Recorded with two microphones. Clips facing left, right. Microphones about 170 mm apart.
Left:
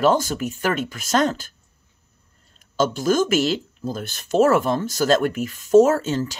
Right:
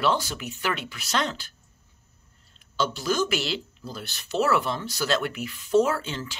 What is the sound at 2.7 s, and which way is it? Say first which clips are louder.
Speech: left 7 dB; 45° left (ahead or behind).